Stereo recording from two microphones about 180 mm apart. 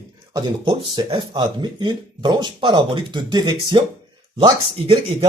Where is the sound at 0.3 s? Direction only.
25° right (ahead or behind).